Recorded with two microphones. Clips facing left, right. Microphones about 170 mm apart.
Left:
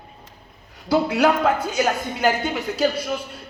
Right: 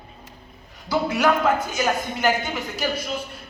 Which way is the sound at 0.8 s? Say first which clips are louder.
Left 3 dB; 60° left (ahead or behind).